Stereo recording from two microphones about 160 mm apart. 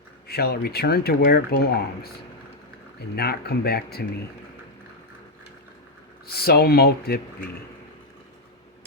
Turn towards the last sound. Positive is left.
turn(degrees=75)  # may be behind; listen again after turning